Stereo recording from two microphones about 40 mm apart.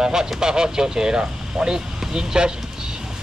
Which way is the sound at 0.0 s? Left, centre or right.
Centre.